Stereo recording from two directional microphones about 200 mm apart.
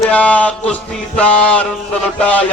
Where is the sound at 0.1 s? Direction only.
5° left (ahead or behind).